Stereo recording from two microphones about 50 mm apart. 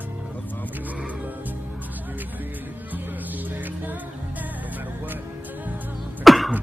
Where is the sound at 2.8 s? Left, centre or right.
Right.